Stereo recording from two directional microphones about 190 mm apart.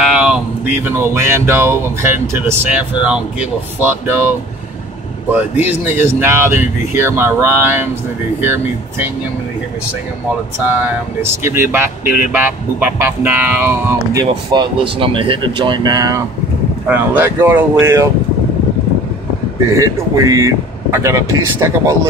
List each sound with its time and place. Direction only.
0.0 s a sound: 5° right (ahead or behind)
0.8 s speech: 15° right (ahead or behind)
5.3 s speech: 10° right (ahead or behind)
11.4 s speech: 15° right (ahead or behind)
14.1 s speech: 25° right (ahead or behind)
16.8 s speech: 10° right (ahead or behind)
19.7 s speech: 15° right (ahead or behind)